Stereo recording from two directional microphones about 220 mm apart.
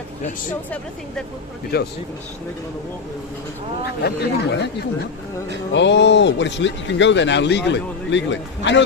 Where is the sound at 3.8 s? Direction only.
50° left (ahead or behind).